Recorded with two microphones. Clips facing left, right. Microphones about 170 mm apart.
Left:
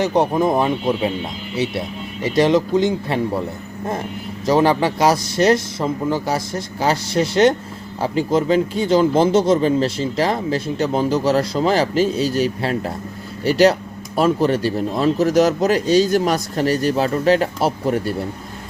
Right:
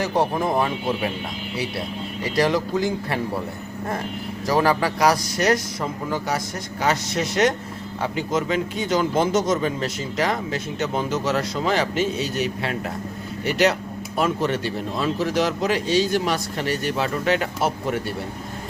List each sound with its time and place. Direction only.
0.0 s speech: 20° left (ahead or behind)
4.4 s speech: 25° left (ahead or behind)